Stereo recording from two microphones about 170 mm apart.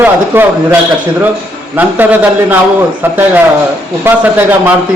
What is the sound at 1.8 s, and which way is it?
A man's voice, 10° right (ahead or behind).